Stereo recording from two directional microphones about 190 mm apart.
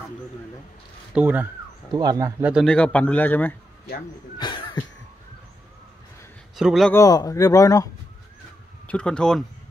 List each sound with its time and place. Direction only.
1.1 s speech: 10° right (ahead or behind)
1.9 s a man's voice: 20° right (ahead or behind)
2.5 s speech: 5° left (ahead or behind)
4.4 s cough: 25° left (ahead or behind)
6.5 s speech: centre (ahead or behind)
6.9 s speech: 15° left (ahead or behind)
8.8 s speech: 5° left (ahead or behind)